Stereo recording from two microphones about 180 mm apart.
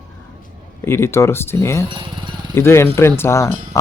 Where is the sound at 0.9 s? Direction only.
15° left (ahead or behind).